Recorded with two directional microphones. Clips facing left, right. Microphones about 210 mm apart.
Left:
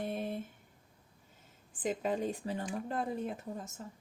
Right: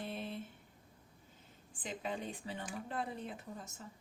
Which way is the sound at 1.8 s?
45° left (ahead or behind).